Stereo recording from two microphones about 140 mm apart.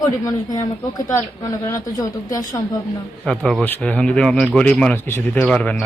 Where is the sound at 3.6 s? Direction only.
10° left (ahead or behind).